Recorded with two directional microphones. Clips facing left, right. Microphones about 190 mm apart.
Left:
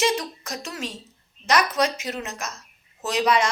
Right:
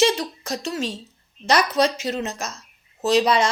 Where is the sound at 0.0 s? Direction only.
30° right (ahead or behind).